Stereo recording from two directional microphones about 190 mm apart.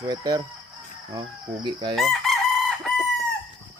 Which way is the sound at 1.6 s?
25° right (ahead or behind).